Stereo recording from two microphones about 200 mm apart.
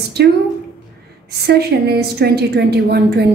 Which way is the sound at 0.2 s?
55° right (ahead or behind).